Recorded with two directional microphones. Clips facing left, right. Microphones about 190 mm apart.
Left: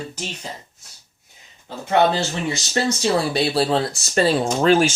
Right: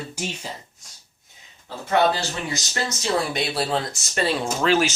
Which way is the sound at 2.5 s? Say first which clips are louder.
Left 6 dB; 30° left (ahead or behind).